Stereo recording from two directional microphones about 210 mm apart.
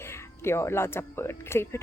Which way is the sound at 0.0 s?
10° left (ahead or behind).